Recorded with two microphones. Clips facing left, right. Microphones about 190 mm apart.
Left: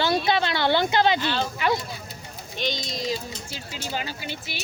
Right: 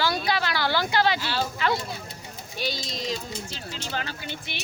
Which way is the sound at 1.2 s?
5° right (ahead or behind).